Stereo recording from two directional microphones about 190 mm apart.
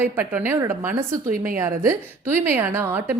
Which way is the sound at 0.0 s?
10° right (ahead or behind).